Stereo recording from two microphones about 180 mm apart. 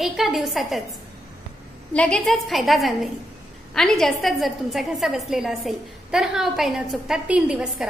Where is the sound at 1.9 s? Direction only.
5° left (ahead or behind).